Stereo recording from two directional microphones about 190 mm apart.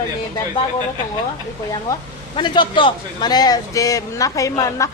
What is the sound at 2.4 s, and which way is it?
Speech, 25° left (ahead or behind).